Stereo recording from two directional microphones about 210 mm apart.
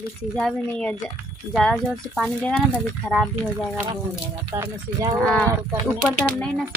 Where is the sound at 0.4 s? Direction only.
5° left (ahead or behind).